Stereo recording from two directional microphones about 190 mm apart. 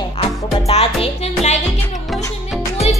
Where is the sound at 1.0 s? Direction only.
35° left (ahead or behind).